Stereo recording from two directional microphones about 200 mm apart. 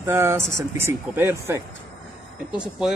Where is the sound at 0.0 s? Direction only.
10° right (ahead or behind).